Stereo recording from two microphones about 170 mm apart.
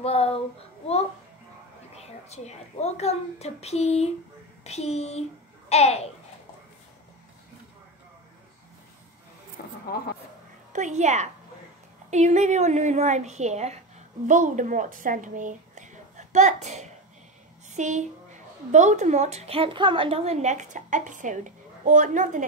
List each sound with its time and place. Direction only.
0.0 s a child's voice: 35° left (ahead or behind)
2.0 s a child's voice: 40° left (ahead or behind)
9.9 s speech: 65° left (ahead or behind)
10.7 s a woman's voice: 45° right (ahead or behind)